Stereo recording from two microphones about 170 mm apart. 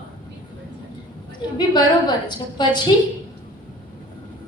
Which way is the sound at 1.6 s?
25° left (ahead or behind).